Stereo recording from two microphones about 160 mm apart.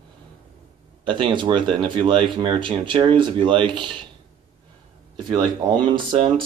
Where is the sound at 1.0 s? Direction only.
30° right (ahead or behind).